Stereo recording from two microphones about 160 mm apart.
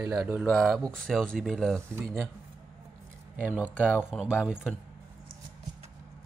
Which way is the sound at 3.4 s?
10° right (ahead or behind).